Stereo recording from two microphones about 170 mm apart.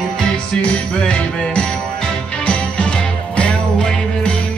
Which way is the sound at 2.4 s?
5° left (ahead or behind).